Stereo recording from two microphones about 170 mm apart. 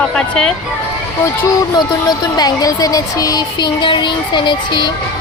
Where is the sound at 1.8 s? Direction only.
25° left (ahead or behind).